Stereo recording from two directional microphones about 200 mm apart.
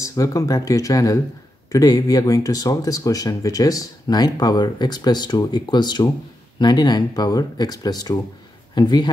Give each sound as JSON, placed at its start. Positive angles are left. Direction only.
{"t": 0.0, "sound": "speech", "side_deg": 15}